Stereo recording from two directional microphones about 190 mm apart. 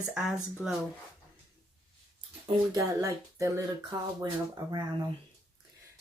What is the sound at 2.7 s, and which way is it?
Speech, 15° right (ahead or behind).